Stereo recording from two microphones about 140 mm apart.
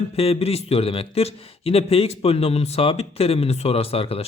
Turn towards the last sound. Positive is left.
turn(degrees=45)  # may be behind; listen again after turning